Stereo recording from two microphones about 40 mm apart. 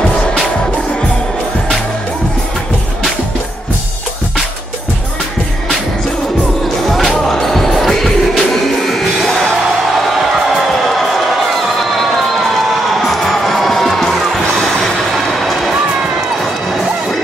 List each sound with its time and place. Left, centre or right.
0.1 s music: left
7.1 s music: centre
12.0 s crowd: centre
14.8 s a sound: centre